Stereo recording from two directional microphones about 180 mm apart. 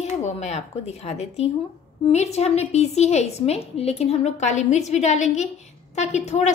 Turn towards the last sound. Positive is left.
turn(degrees=40)  # may be behind; listen again after turning